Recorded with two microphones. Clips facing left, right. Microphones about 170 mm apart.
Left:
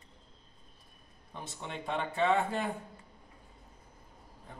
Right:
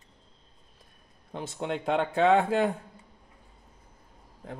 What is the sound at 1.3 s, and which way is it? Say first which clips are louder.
Speech: right 10 dB; 90° right.